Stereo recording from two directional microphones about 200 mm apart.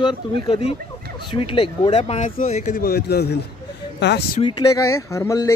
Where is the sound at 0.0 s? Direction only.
25° left (ahead or behind); by 4.4 s 55° left (ahead or behind).